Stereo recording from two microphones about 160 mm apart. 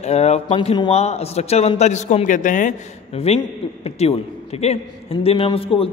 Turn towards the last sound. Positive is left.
turn(degrees=35)  # may be behind; listen again after turning